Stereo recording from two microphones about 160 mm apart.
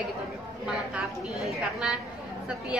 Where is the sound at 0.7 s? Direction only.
5° right (ahead or behind).